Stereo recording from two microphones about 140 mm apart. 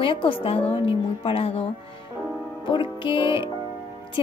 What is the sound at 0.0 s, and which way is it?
A woman's voice, 40° left (ahead or behind).